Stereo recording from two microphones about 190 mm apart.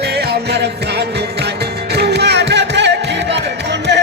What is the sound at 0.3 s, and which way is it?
Music, 60° right (ahead or behind).